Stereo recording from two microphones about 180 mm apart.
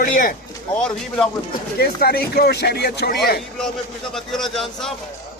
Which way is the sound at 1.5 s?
60° left (ahead or behind).